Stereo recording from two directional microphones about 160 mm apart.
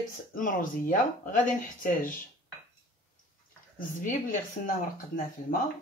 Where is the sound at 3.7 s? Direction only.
60° left (ahead or behind).